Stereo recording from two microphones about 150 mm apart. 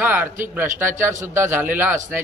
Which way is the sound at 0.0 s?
10° right (ahead or behind).